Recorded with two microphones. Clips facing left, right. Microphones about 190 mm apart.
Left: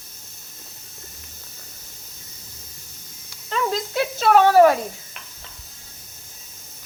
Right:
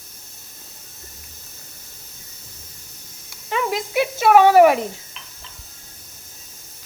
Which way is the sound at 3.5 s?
15° right (ahead or behind).